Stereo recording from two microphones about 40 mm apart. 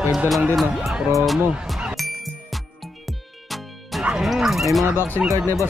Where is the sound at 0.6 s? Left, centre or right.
Centre.